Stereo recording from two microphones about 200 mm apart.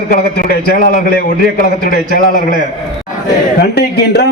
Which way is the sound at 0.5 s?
45° left (ahead or behind).